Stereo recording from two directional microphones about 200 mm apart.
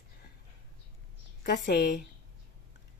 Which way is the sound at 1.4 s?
55° left (ahead or behind).